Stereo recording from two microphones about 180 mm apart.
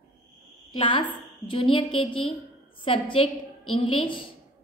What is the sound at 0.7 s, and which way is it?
A woman's voice, 25° left (ahead or behind).